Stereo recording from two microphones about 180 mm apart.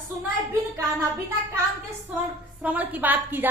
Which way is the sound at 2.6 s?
10° right (ahead or behind).